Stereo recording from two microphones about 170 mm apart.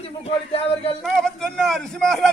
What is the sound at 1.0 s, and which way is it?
Speech, centre (ahead or behind).